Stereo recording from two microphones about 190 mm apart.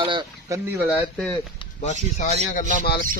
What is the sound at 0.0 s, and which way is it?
Speech, 25° right (ahead or behind).